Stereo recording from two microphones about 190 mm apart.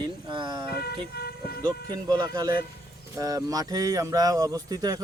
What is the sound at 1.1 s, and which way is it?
Speech, 55° left (ahead or behind).